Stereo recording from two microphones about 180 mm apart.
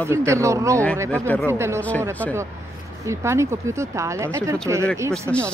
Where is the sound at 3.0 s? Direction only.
15° right (ahead or behind).